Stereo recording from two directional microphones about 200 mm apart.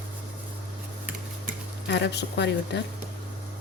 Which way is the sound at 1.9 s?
60° left (ahead or behind).